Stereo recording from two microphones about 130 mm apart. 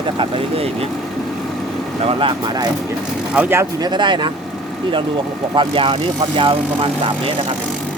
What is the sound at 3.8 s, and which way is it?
Speech, 35° right (ahead or behind).